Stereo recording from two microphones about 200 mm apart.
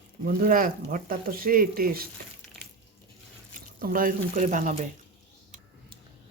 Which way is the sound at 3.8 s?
45° right (ahead or behind).